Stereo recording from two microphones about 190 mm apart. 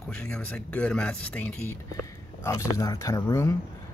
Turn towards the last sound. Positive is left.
turn(degrees=15)  # may be behind; listen again after turning